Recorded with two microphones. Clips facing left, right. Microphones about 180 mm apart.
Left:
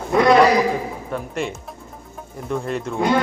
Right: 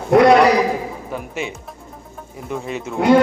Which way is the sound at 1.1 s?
Centre (ahead or behind).